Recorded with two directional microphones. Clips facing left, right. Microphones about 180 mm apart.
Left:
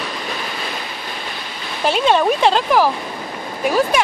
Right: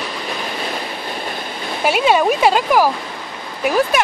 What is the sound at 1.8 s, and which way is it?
Speech, 10° right (ahead or behind).